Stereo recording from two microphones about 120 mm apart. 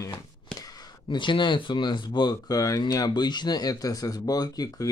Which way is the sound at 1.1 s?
40° left (ahead or behind).